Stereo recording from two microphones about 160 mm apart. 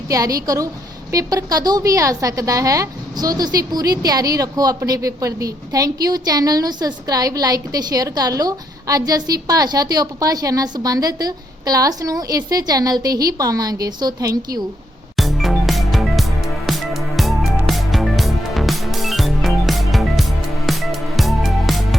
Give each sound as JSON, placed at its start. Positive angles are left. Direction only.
{"t": 0.1, "sound": "a woman's voice", "side_deg": -20}
{"t": 15.1, "sound": "music", "side_deg": 0}